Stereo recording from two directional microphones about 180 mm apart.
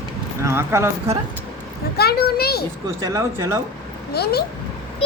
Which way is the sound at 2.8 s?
20° right (ahead or behind).